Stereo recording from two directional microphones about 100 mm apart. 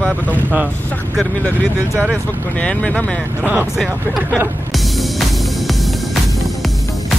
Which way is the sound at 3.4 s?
15° right (ahead or behind).